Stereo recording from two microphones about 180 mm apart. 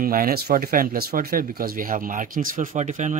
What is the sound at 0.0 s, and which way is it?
Speech, 55° right (ahead or behind).